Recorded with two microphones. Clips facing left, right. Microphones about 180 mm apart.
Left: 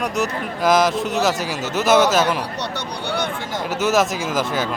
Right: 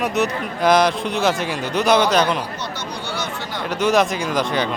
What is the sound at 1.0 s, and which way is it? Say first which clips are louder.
Speech: left 2 dB; 45° left (ahead or behind).